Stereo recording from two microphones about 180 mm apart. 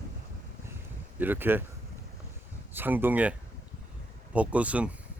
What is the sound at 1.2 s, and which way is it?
Speech, 10° right (ahead or behind).